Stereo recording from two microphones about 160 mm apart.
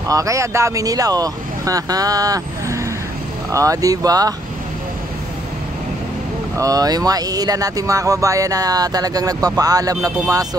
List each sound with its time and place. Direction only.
0.1 s speech: 20° right (ahead or behind)
6.5 s speech: 20° right (ahead or behind)